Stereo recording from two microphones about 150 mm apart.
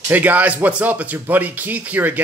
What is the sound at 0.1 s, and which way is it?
Speech, 10° right (ahead or behind).